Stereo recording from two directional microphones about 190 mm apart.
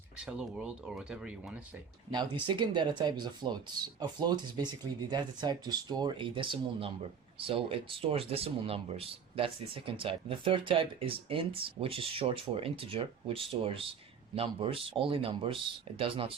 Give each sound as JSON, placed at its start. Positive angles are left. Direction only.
{"t": 0.2, "sound": "speech", "side_deg": -5}
{"t": 2.0, "sound": "speech", "side_deg": -25}